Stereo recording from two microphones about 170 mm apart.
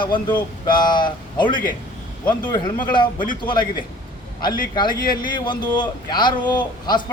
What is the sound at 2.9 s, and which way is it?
Speech, 25° left (ahead or behind).